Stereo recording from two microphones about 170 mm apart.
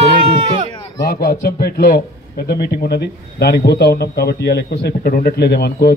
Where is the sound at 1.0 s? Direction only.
60° left (ahead or behind).